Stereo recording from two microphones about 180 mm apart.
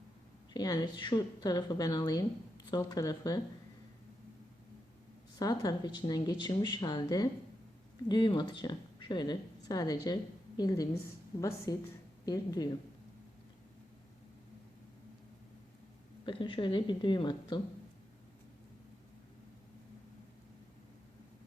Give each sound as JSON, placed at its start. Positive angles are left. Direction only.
{"t": 0.5, "sound": "a woman's voice", "side_deg": 20}
{"t": 5.4, "sound": "a woman's voice", "side_deg": 20}
{"t": 16.2, "sound": "a woman's voice", "side_deg": 25}